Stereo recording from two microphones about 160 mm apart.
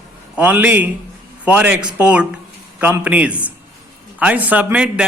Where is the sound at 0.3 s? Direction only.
10° right (ahead or behind).